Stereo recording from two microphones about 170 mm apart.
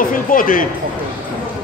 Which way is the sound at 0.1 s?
55° left (ahead or behind).